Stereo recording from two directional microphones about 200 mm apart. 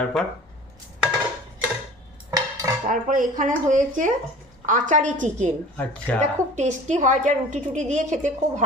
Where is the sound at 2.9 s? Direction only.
40° right (ahead or behind).